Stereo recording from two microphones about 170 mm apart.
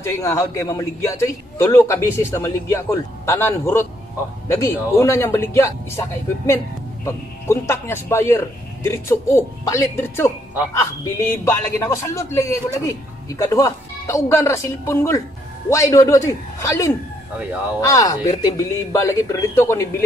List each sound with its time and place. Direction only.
0.0 s speech: 20° left (ahead or behind)